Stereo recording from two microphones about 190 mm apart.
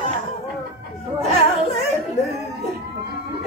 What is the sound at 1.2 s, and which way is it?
Speech, 35° left (ahead or behind).